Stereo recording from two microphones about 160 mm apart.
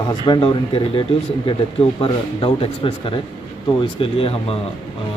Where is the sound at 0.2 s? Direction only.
30° left (ahead or behind).